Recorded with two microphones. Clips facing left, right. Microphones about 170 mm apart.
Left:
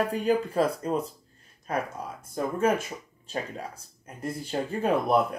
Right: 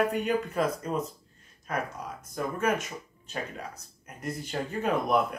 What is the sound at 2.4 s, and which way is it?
Speech, 30° left (ahead or behind).